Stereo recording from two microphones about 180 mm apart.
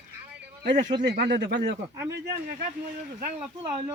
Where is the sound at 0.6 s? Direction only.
70° right (ahead or behind).